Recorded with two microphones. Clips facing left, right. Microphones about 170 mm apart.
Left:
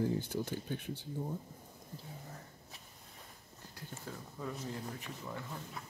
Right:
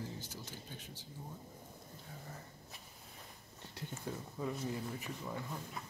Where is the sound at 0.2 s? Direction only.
60° left (ahead or behind).